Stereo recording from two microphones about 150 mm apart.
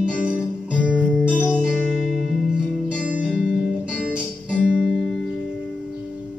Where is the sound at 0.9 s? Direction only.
10° left (ahead or behind).